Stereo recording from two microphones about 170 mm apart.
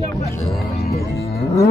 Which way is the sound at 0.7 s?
35° left (ahead or behind).